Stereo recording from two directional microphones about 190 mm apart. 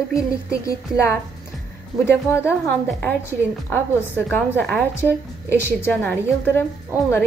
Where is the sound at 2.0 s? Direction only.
15° left (ahead or behind).